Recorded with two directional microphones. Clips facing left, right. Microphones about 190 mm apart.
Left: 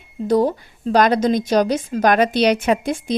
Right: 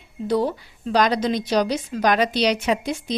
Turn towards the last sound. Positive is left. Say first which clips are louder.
# left 4 dB
turn(degrees=50)  # may be behind; listen again after turning